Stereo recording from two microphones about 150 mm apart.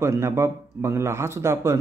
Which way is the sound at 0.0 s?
20° right (ahead or behind).